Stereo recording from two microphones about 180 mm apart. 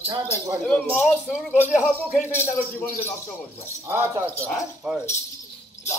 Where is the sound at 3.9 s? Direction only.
15° right (ahead or behind).